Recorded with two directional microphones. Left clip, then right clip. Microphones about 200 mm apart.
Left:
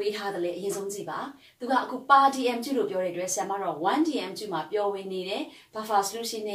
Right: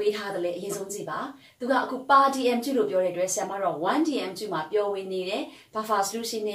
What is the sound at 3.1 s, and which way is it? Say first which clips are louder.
A woman's voice: right 2 dB; 15° left (ahead or behind).